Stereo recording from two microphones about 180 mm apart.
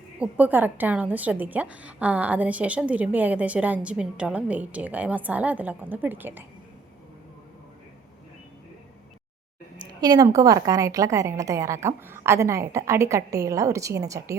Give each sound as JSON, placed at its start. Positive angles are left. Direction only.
{"t": 0.2, "sound": "a woman's voice", "side_deg": -10}
{"t": 10.0, "sound": "a woman's voice", "side_deg": -20}